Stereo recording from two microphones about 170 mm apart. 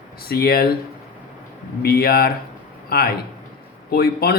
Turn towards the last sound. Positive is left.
turn(degrees=70)  # may be behind; listen again after turning